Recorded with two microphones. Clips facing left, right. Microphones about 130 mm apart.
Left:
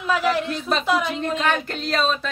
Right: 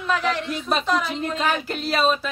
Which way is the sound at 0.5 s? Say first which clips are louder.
Left 1 dB; 5° right (ahead or behind).